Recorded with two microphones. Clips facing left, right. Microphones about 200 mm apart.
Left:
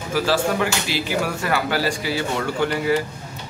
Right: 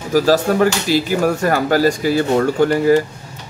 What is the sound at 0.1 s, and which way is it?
Speech, 40° right (ahead or behind).